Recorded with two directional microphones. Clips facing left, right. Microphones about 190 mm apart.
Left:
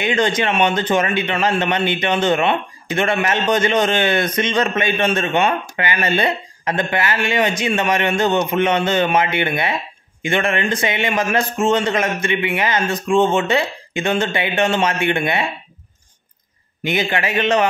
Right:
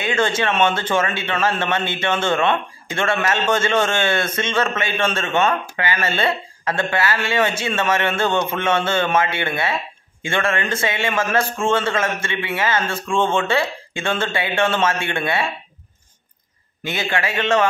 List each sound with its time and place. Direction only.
0.0 s a man's voice: 20° left (ahead or behind)
16.8 s a man's voice: 20° left (ahead or behind)